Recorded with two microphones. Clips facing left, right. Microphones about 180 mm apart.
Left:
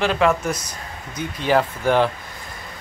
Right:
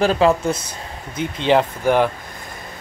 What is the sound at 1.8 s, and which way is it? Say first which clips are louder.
Speech: right 1 dB; 10° right (ahead or behind).